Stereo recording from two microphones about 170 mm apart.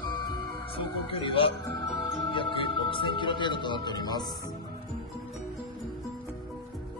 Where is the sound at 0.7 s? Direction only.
30° left (ahead or behind).